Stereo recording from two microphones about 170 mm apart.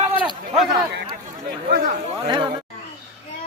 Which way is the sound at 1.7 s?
70° right (ahead or behind).